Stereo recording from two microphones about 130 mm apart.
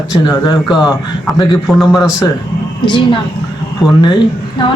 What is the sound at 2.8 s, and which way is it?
Speech, 35° left (ahead or behind).